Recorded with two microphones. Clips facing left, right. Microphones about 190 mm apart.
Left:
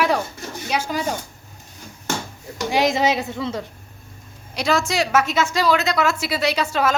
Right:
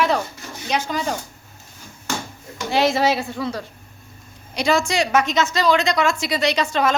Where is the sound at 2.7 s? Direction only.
15° left (ahead or behind).